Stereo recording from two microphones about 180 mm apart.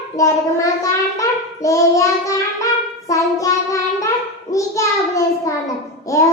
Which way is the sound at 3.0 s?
15° left (ahead or behind).